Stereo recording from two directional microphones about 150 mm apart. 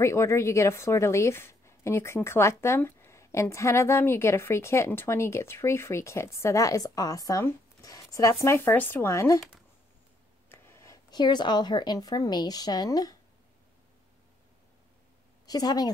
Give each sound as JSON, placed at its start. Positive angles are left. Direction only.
{"t": 0.0, "sound": "a woman's voice", "side_deg": 20}
{"t": 10.5, "sound": "speech", "side_deg": 15}
{"t": 15.4, "sound": "a woman's voice", "side_deg": 25}